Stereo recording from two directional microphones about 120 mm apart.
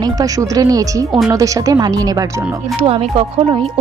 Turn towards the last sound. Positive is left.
turn(degrees=-50)  # may be behind; listen again after turning